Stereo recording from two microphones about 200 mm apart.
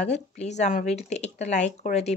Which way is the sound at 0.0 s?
35° left (ahead or behind).